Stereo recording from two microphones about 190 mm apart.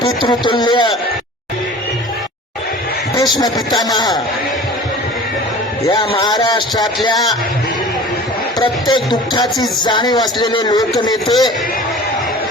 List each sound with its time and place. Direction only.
0.0 s speech: 25° left (ahead or behind)
3.8 s speech: 20° left (ahead or behind)
5.8 s speech: 20° left (ahead or behind)
8.5 s speech: 25° left (ahead or behind)